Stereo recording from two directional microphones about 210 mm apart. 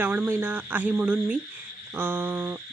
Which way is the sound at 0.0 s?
10° right (ahead or behind).